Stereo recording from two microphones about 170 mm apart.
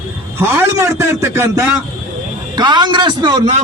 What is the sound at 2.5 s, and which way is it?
Speech, 25° right (ahead or behind).